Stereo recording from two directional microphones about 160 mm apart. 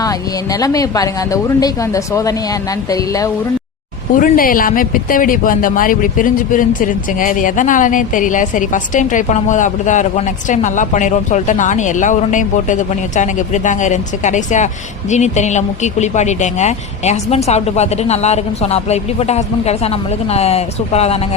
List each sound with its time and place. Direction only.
0.0 s speech: 20° left (ahead or behind)
4.2 s speech: 60° left (ahead or behind); by 21.2 s 40° left (ahead or behind)